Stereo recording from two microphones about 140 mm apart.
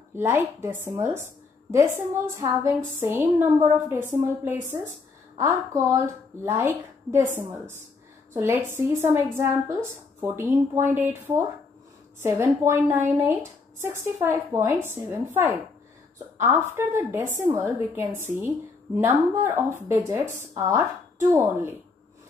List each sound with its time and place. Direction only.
0.1 s a woman's voice: 15° right (ahead or behind)
16.7 s a woman's voice: 15° right (ahead or behind)